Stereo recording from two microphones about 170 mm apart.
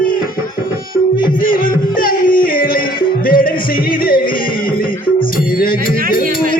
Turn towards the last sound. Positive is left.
turn(degrees=60)  # may be behind; listen again after turning